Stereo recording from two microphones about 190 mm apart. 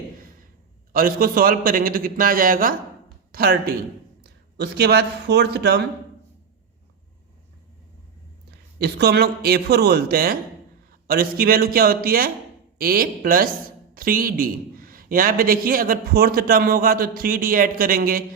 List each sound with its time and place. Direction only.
0.9 s a man's voice: 50° right (ahead or behind)
8.8 s a man's voice: 60° right (ahead or behind)